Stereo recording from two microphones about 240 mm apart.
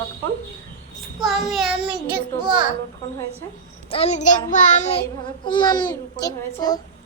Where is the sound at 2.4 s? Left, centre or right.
Centre.